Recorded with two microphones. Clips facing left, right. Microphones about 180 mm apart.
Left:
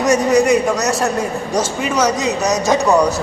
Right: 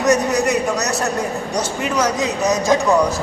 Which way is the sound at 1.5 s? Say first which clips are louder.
Left 3 dB; 90° left.